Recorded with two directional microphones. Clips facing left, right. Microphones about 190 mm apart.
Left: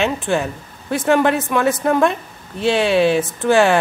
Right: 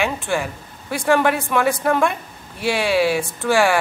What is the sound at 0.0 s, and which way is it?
Speech, 20° left (ahead or behind).